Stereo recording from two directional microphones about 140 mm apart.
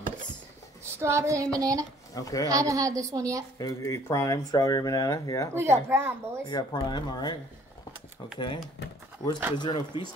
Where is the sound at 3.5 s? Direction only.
25° left (ahead or behind).